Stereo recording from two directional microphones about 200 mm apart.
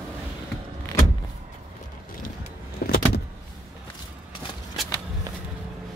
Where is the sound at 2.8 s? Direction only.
50° left (ahead or behind).